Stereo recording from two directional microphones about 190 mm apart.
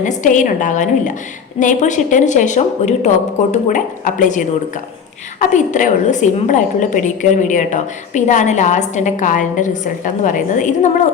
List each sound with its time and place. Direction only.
0.0 s a woman's voice: 40° left (ahead or behind)